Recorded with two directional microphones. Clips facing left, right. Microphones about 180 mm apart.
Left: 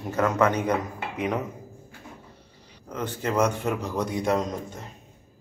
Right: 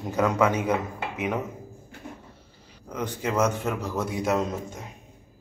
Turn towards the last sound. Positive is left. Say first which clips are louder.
# right 1 dB
turn(degrees=-5)  # may be behind; listen again after turning